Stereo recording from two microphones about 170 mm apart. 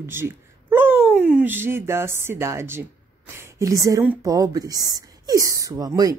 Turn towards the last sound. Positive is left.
turn(degrees=-20)  # may be behind; listen again after turning